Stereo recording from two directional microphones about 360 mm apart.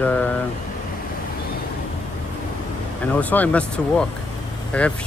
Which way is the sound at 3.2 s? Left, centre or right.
Centre.